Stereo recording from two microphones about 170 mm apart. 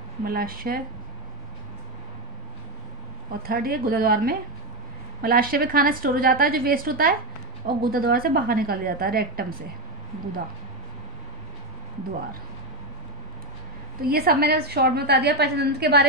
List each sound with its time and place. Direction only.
0.2 s a woman's voice: 60° right (ahead or behind)
3.4 s a woman's voice: 60° right (ahead or behind)
14.0 s a woman's voice: 60° right (ahead or behind)